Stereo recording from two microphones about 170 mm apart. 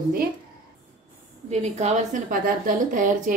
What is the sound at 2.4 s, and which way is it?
Speech, 55° right (ahead or behind).